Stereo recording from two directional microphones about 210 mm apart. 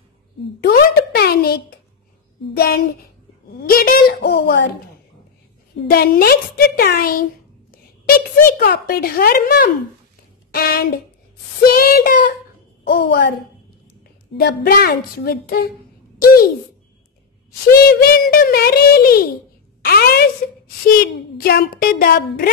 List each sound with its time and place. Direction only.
0.6 s a sound: 50° left (ahead or behind)
2.5 s a woman's voice: 45° left (ahead or behind)
5.9 s a woman's voice: 45° left (ahead or behind)
8.5 s a woman's voice: 45° left (ahead or behind)
14.3 s a woman's voice: 45° left (ahead or behind)
17.7 s a woman's voice: 45° left (ahead or behind)